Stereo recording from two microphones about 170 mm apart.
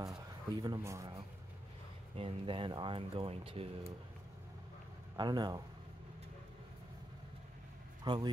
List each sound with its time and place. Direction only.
0.6 s speech: 20° right (ahead or behind)
2.1 s speech: 30° right (ahead or behind)
5.1 s speech: 25° right (ahead or behind)
8.0 s speech: 25° right (ahead or behind)